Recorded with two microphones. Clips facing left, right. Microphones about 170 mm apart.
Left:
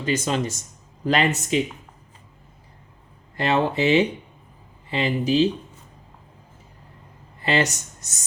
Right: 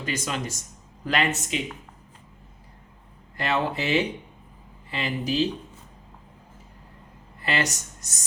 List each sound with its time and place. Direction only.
0.0 s speech: 25° left (ahead or behind)
3.3 s speech: 25° left (ahead or behind)
7.4 s speech: 20° left (ahead or behind)